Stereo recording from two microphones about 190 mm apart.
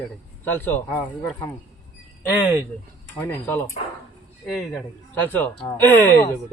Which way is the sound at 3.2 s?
10° left (ahead or behind).